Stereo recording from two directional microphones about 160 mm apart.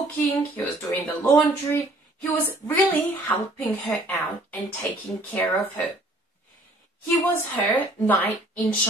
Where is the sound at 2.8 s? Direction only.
10° left (ahead or behind).